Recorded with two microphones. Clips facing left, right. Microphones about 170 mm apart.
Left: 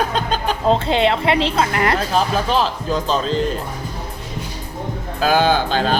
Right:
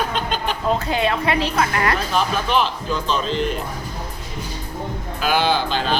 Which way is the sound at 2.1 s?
35° left (ahead or behind).